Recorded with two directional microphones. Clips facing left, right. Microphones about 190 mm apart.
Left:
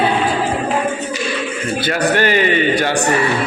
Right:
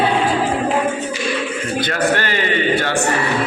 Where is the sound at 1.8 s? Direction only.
10° left (ahead or behind).